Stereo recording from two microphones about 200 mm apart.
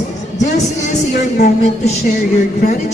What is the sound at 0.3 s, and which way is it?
A woman's voice, 35° left (ahead or behind).